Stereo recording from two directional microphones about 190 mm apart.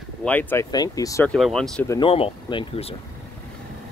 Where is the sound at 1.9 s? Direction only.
25° left (ahead or behind).